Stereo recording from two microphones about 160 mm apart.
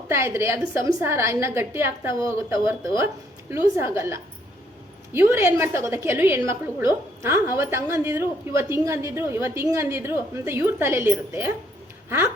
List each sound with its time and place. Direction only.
0.1 s a woman's voice: 15° right (ahead or behind)